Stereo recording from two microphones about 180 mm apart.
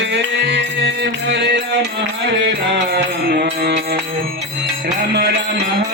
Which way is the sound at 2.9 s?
65° right (ahead or behind).